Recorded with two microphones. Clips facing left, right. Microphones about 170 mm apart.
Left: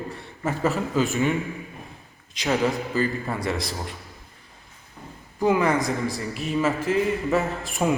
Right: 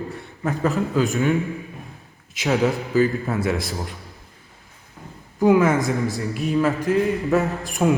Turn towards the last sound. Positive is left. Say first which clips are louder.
# right 3 dB
turn(degrees=0)  # may be behind; listen again after turning